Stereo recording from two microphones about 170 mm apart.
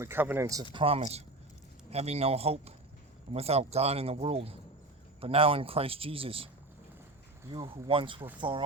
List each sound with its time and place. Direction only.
0.0 s speech: 10° right (ahead or behind)
0.7 s a man's voice: 30° right (ahead or behind)
7.5 s speech: 25° right (ahead or behind)